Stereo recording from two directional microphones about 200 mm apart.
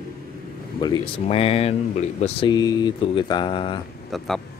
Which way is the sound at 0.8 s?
25° left (ahead or behind).